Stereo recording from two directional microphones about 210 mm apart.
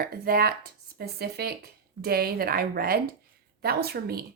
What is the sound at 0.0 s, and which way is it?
A woman's voice, 45° right (ahead or behind).